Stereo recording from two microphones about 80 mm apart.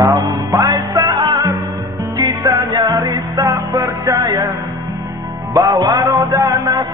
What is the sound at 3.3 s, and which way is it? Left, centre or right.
Music, right.